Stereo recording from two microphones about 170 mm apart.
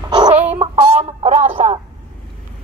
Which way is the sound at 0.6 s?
40° right (ahead or behind).